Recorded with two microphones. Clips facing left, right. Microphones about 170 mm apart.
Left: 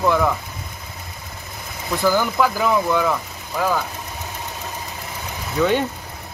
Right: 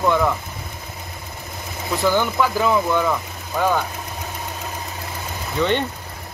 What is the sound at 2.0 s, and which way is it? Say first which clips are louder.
Speech: left 1 dB; centre (ahead or behind).